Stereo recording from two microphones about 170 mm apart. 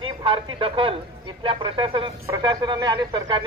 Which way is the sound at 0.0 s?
30° right (ahead or behind).